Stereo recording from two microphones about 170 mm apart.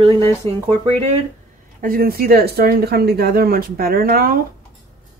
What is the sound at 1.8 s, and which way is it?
Speech, 60° right (ahead or behind).